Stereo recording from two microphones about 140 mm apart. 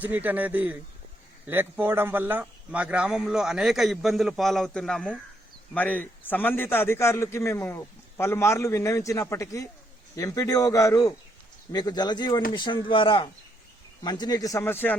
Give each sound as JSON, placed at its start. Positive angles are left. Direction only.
{"t": 0.0, "sound": "a man's voice", "side_deg": -10}